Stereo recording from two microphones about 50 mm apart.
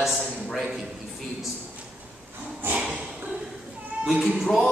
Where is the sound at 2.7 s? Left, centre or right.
Right.